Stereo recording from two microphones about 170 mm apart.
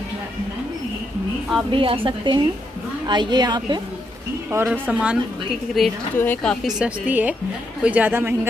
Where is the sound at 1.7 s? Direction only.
30° right (ahead or behind).